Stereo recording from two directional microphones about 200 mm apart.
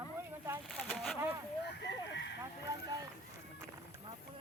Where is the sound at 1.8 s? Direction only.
60° left (ahead or behind).